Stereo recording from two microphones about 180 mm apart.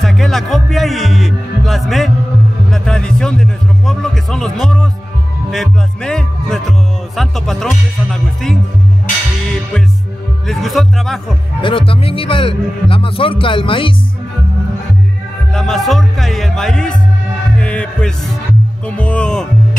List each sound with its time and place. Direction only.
0.0 s music: centre (ahead or behind)
2.7 s a man's voice: 5° left (ahead or behind)
5.5 s music: 5° left (ahead or behind)
10.4 s music: centre (ahead or behind)
11.6 s speech: 30° left (ahead or behind)
15.5 s music: 5° left (ahead or behind)
18.9 s speech: 5° left (ahead or behind)